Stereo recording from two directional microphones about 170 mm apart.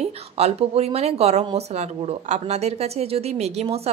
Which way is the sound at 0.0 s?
40° right (ahead or behind).